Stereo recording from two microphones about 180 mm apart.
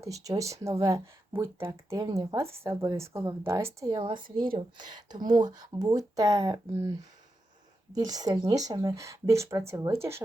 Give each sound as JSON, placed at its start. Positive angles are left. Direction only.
{"t": 0.0, "sound": "speech", "side_deg": -20}
{"t": 7.9, "sound": "speech", "side_deg": -20}